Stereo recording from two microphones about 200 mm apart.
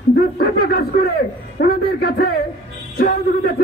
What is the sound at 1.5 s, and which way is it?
Speech, 50° left (ahead or behind).